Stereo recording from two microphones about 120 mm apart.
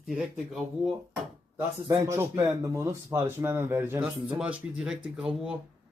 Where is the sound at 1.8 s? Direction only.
25° right (ahead or behind); by 5.5 s 5° right (ahead or behind).